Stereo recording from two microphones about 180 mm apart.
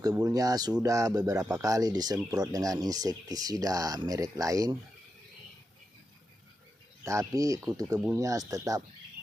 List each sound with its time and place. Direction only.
0.0 s speech: 20° right (ahead or behind)
7.1 s speech: 20° right (ahead or behind)